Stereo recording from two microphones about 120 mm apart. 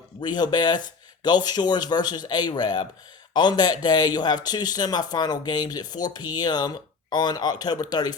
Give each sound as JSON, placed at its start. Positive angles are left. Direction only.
{"t": 0.2, "sound": "speech", "side_deg": 35}